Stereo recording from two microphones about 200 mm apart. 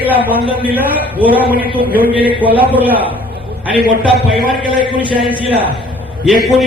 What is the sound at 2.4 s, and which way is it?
Speech, 10° right (ahead or behind).